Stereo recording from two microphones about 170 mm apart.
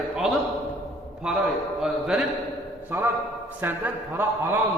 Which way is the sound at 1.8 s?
5° right (ahead or behind).